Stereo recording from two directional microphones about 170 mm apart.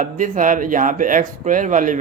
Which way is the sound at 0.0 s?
50° right (ahead or behind).